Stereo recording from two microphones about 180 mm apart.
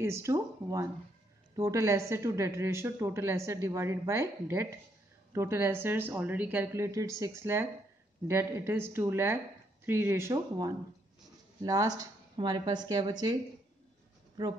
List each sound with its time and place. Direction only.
0.0 s a woman's voice: 15° right (ahead or behind)